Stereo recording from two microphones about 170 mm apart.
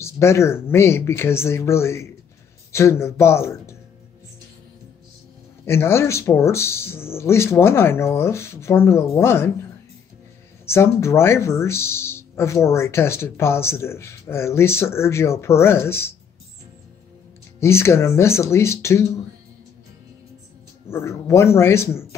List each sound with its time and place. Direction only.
0.0 s speech: 15° left (ahead or behind)
5.7 s speech: 15° left (ahead or behind)
10.7 s speech: 15° left (ahead or behind)
17.6 s speech: 15° left (ahead or behind)
20.9 s speech: 15° left (ahead or behind)